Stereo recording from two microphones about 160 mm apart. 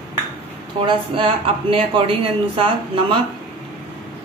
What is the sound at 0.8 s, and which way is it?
Speech, 30° right (ahead or behind).